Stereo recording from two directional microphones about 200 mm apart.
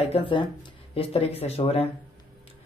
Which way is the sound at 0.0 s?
30° left (ahead or behind).